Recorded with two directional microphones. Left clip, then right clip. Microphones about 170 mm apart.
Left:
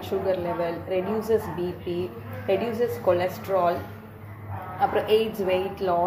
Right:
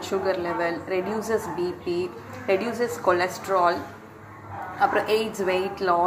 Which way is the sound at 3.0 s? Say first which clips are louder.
Right 2 dB; 15° right (ahead or behind).